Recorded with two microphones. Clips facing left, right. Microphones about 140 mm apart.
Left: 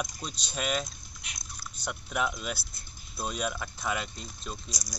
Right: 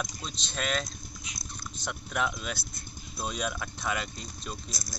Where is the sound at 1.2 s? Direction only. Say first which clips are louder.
Left 1 dB; 70° left (ahead or behind).